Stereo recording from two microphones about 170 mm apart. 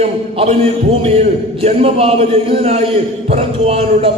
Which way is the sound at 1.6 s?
35° right (ahead or behind).